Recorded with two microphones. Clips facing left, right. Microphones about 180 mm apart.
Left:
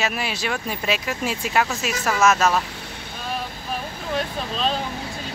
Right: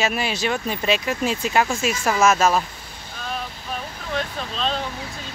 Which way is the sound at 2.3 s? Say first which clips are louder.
Right 1 dB; 10° right (ahead or behind).